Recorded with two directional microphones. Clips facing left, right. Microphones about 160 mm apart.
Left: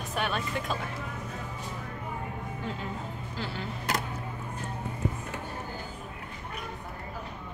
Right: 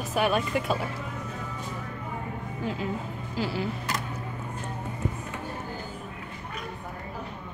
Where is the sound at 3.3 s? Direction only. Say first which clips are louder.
Right 8 dB; 10° right (ahead or behind).